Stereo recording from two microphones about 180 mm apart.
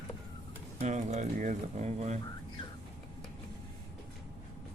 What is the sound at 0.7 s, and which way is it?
Speech, 40° right (ahead or behind).